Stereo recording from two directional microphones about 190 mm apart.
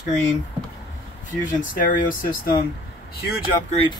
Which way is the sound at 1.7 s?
50° left (ahead or behind).